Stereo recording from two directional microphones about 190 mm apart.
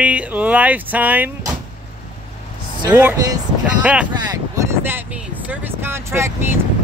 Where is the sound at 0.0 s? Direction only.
5° right (ahead or behind).